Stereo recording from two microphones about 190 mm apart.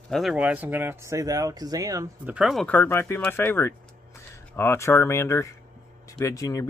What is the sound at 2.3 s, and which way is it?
Speech, centre (ahead or behind).